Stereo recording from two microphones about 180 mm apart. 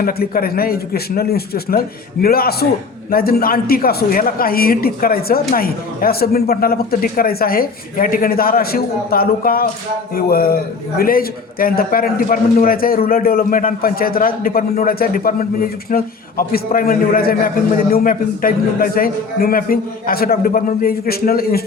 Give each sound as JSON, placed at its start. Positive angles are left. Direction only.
{"t": 0.0, "sound": "a man's voice", "side_deg": 55}